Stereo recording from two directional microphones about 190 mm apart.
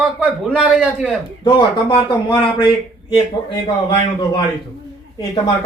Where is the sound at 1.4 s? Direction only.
25° left (ahead or behind).